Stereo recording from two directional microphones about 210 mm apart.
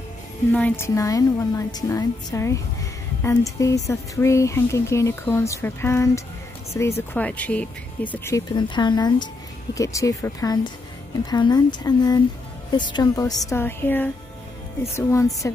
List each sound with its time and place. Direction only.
0.5 s speech: 5° left (ahead or behind)